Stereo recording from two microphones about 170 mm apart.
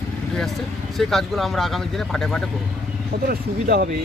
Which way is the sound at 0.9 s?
Centre (ahead or behind).